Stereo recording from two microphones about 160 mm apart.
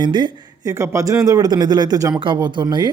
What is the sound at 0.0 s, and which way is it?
Speech, 25° right (ahead or behind).